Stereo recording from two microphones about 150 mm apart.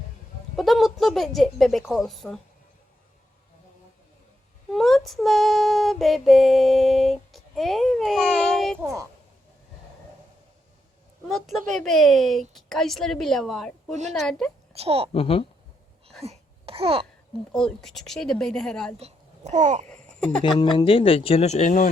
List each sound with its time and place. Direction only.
0.5 s speech: centre (ahead or behind)
4.7 s child singing: centre (ahead or behind)
8.8 s speech: 20° right (ahead or behind)
11.3 s a woman's voice: centre (ahead or behind)
14.7 s a child's voice: 40° right (ahead or behind)
15.1 s speech: 40° left (ahead or behind)
16.2 s babbling: 40° right (ahead or behind)
17.5 s a woman's voice: 5° left (ahead or behind)
18.9 s a child's voice: 45° right (ahead or behind)
19.9 s a sound: 5° left (ahead or behind)
20.4 s speech: 30° left (ahead or behind); by 21.8 s 55° left (ahead or behind)